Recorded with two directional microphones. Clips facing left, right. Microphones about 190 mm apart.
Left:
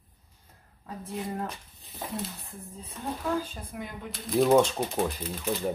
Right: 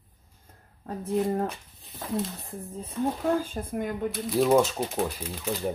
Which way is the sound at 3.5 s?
50° right (ahead or behind).